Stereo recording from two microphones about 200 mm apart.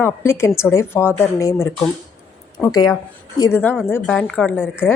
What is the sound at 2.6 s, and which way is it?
A woman's voice, 20° left (ahead or behind).